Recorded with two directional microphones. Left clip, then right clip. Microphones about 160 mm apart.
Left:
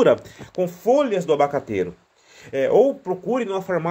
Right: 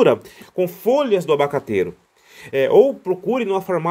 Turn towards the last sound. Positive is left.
turn(degrees=-30)  # may be behind; listen again after turning